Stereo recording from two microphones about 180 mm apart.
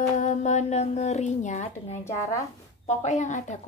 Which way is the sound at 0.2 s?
40° left (ahead or behind).